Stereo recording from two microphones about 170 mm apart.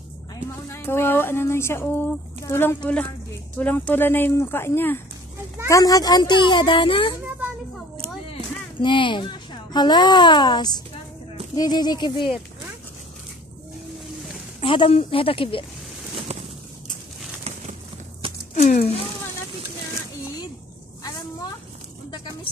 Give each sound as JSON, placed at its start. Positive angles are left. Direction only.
{"t": 0.7, "sound": "a woman's voice", "side_deg": 15}
{"t": 8.8, "sound": "a woman's voice", "side_deg": 30}
{"t": 14.6, "sound": "speech", "side_deg": 30}
{"t": 18.5, "sound": "speech", "side_deg": 45}